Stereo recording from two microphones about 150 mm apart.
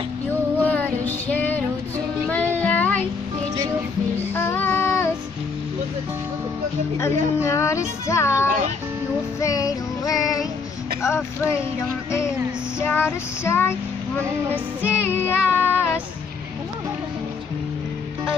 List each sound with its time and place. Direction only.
0.7 s music: 10° left (ahead or behind)
2.2 s child singing: 10° left (ahead or behind)
4.4 s child singing: 15° left (ahead or behind)
7.3 s music: 20° left (ahead or behind)
8.1 s speech: 20° left (ahead or behind)
9.4 s child singing: 25° left (ahead or behind)
12.8 s child singing: 15° left (ahead or behind)
14.5 s music: 10° right (ahead or behind)
15.0 s child singing: 15° left (ahead or behind)